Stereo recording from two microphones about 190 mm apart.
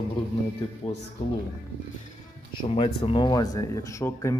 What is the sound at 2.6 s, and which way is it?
Speech, 30° left (ahead or behind).